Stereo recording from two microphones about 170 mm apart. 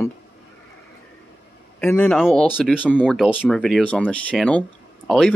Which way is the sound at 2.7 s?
10° left (ahead or behind).